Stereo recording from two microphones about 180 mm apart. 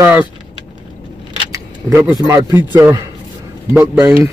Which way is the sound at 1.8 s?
15° right (ahead or behind).